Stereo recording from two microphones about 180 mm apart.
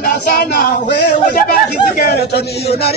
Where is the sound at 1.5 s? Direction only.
55° left (ahead or behind).